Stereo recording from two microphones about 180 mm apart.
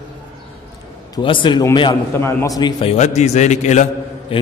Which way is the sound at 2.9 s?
40° left (ahead or behind).